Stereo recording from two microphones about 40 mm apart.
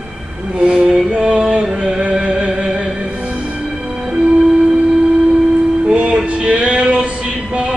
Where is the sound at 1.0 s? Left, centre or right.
Right.